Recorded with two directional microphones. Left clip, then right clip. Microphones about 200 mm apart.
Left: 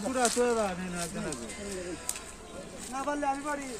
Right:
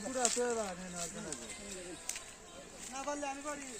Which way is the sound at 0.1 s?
15° left (ahead or behind).